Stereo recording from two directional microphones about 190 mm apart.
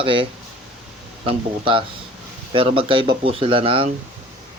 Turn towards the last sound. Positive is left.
turn(degrees=-30)  # may be behind; listen again after turning